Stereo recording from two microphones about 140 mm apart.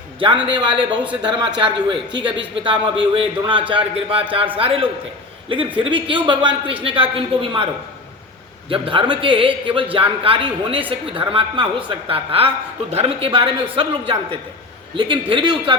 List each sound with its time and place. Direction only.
0.7 s speech: 5° right (ahead or behind)
1.5 s a man's voice: 35° right (ahead or behind)
8.7 s a man's voice: 40° right (ahead or behind)